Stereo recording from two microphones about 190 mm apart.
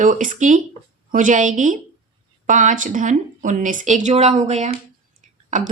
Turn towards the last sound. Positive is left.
turn(degrees=-40)  # may be behind; listen again after turning